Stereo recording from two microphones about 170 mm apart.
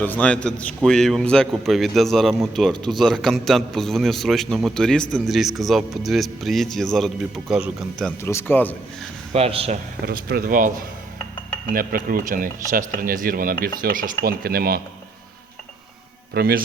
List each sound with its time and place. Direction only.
0.0 s a man's voice: 10° left (ahead or behind)
8.2 s speech: 15° left (ahead or behind)
9.3 s speech: 35° right (ahead or behind)
10.1 s speech: 60° right (ahead or behind)
16.3 s speech: 65° right (ahead or behind)